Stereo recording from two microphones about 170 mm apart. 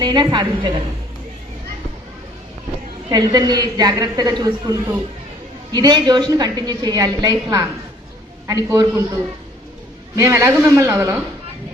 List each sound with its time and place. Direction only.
0.0 s a woman's voice: 25° right (ahead or behind)
3.1 s a woman's voice: 25° right (ahead or behind)
10.2 s a woman's voice: 20° right (ahead or behind)